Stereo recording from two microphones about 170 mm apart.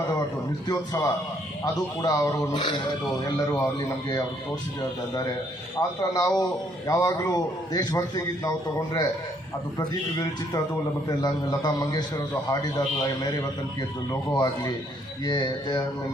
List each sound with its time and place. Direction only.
0.7 s a man's voice: 20° left (ahead or behind)
6.0 s a man's voice: 20° left (ahead or behind)